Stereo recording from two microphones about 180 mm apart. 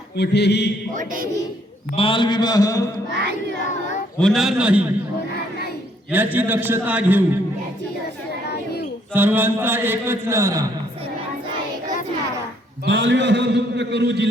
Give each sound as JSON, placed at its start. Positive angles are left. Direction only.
{"t": 0.2, "sound": "mantra", "side_deg": 65}
{"t": 0.9, "sound": "speech", "side_deg": -50}
{"t": 2.0, "sound": "a man's voice", "side_deg": 30}
{"t": 4.2, "sound": "a man's voice", "side_deg": 0}
{"t": 6.1, "sound": "a man's voice", "side_deg": -10}
{"t": 9.1, "sound": "a man's voice", "side_deg": -10}
{"t": 12.8, "sound": "a man's voice", "side_deg": -70}